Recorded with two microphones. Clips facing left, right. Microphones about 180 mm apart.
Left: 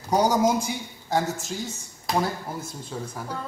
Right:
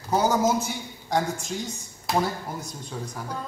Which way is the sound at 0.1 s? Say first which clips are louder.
Left 1 dB; 15° left (ahead or behind).